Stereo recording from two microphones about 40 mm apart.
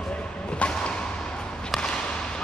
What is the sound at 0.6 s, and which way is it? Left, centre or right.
Whip, left.